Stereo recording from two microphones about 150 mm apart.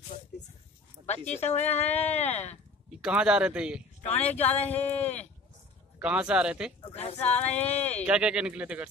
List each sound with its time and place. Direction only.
1.0 s a sound: 50° left (ahead or behind)
1.4 s speech: 50° left (ahead or behind)
3.0 s a man's voice: 5° right (ahead or behind)
4.4 s speech: 45° left (ahead or behind)
5.9 s a man's voice: 5° right (ahead or behind)
6.8 s speech: 45° left (ahead or behind)
8.1 s a man's voice: 5° right (ahead or behind)